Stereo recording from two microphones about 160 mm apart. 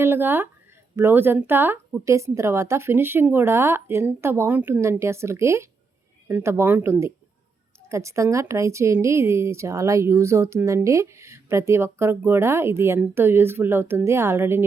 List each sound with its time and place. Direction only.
0.0 s speech: 15° right (ahead or behind)